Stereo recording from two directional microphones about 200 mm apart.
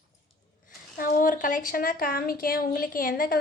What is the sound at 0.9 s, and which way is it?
A woman's voice, 45° left (ahead or behind).